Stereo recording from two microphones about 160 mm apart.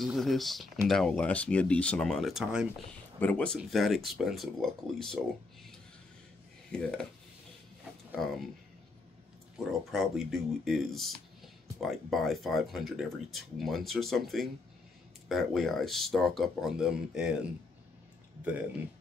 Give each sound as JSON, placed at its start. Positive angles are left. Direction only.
{"t": 0.0, "sound": "speech", "side_deg": 0}
{"t": 3.2, "sound": "speech", "side_deg": 10}
{"t": 6.7, "sound": "speech", "side_deg": 5}
{"t": 8.1, "sound": "speech", "side_deg": 5}
{"t": 9.7, "sound": "speech", "side_deg": 0}